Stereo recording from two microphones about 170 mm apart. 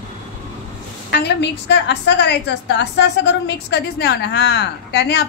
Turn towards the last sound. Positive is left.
turn(degrees=75)  # may be behind; listen again after turning